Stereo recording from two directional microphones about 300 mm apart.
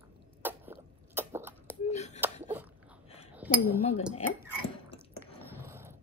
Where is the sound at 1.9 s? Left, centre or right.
Left.